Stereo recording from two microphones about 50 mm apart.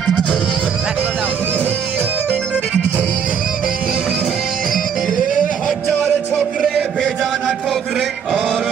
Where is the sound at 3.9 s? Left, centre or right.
Centre.